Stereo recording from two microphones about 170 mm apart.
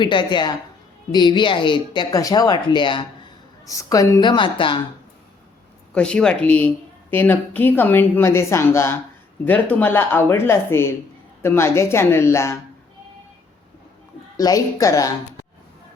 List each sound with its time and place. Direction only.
0.0 s speech: 25° left (ahead or behind)
5.9 s a woman's voice: 5° left (ahead or behind)
14.3 s speech: 20° left (ahead or behind)